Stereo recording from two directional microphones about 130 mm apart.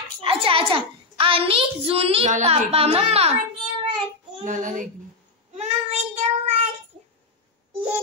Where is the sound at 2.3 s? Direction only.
55° right (ahead or behind).